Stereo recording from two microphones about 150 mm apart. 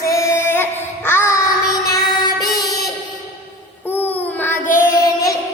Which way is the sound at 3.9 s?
15° left (ahead or behind).